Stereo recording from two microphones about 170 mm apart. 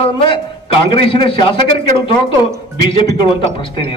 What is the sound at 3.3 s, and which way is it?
Speech, 30° left (ahead or behind).